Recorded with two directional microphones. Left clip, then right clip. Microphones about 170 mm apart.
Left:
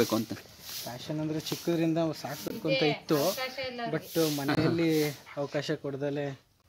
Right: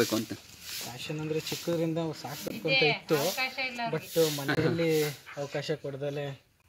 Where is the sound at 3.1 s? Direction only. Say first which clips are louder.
Even; 30° left (ahead or behind).